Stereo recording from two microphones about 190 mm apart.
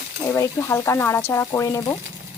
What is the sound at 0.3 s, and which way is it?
Speech, 15° left (ahead or behind).